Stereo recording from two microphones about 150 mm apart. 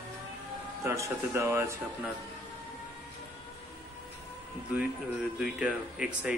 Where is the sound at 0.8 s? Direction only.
20° right (ahead or behind).